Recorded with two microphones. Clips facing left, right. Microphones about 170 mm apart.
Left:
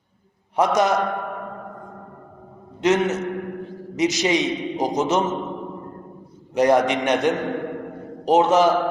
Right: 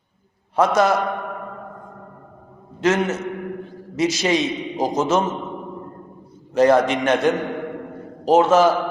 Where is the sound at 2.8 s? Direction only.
15° left (ahead or behind).